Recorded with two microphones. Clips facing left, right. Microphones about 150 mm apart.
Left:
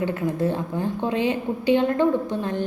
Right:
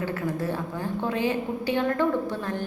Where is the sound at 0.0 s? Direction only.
20° left (ahead or behind).